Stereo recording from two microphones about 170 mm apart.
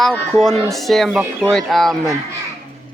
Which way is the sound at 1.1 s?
15° right (ahead or behind).